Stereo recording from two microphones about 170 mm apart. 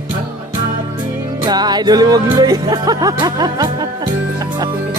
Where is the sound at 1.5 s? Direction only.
25° right (ahead or behind).